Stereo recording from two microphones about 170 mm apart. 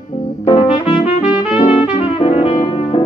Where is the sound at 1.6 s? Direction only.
30° left (ahead or behind).